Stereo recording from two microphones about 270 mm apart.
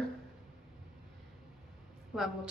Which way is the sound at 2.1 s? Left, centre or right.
Centre.